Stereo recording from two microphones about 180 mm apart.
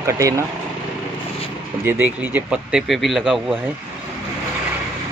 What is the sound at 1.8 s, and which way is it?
Speech, 10° right (ahead or behind).